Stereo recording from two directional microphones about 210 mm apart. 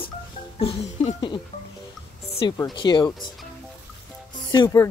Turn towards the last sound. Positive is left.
turn(degrees=15)  # may be behind; listen again after turning